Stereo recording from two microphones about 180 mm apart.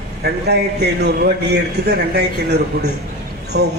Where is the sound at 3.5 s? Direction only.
75° right (ahead or behind).